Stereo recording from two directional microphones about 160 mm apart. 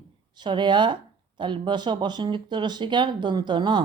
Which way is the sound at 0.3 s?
30° right (ahead or behind).